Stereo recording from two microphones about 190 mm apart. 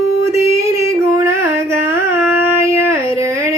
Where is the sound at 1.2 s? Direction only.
15° right (ahead or behind).